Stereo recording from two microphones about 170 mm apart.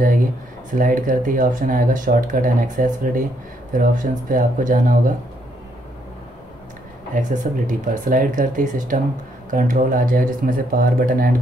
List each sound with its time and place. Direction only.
0.7 s speech: 55° right (ahead or behind)
7.2 s speech: 50° right (ahead or behind)